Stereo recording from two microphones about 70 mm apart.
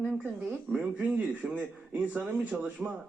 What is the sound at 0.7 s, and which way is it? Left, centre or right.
Speech, right.